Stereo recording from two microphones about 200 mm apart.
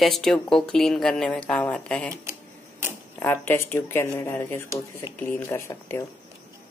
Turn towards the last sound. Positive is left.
turn(degrees=15)  # may be behind; listen again after turning